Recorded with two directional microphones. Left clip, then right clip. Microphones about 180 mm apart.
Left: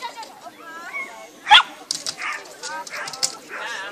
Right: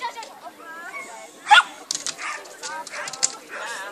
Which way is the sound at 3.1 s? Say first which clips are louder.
Even; centre (ahead or behind).